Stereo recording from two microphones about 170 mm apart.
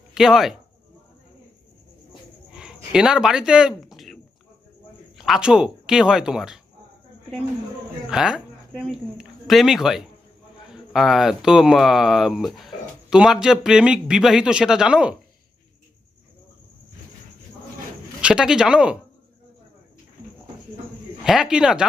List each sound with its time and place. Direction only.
0.1 s speech: 5° right (ahead or behind)
2.5 s a sound: 5° right (ahead or behind)
5.1 s speech: centre (ahead or behind)
8.1 s speech: 5° right (ahead or behind)
18.2 s speech: 5° right (ahead or behind)
21.2 s speech: 5° right (ahead or behind)